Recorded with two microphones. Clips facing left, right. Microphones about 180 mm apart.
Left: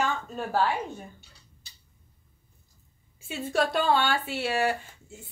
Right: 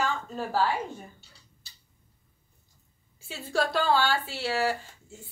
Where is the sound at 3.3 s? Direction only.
20° left (ahead or behind).